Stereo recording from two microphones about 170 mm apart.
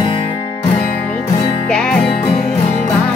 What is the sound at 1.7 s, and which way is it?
Music, 5° left (ahead or behind).